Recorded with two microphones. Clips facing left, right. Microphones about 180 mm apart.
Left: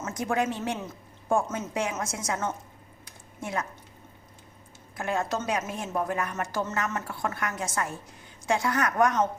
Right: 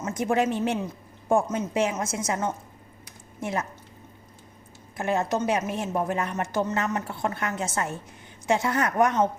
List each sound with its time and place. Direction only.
0.0 s a woman's voice: 20° right (ahead or behind)
4.9 s a woman's voice: 20° right (ahead or behind)